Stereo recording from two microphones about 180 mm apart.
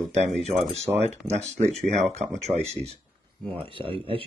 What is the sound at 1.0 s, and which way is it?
Speech, 40° right (ahead or behind).